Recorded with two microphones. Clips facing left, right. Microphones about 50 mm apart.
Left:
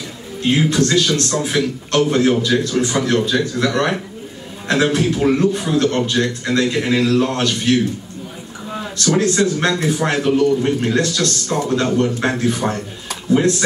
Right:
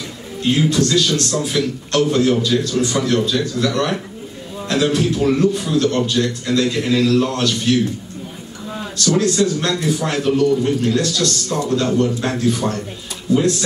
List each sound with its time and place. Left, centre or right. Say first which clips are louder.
0.4 s a man's voice: left 1 dB; left
8.9 s a man's voice: even; left